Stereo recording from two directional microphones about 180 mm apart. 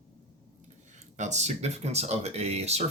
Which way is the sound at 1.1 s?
40° right (ahead or behind).